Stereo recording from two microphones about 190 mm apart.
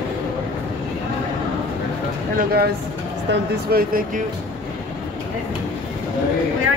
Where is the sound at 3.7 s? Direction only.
55° right (ahead or behind).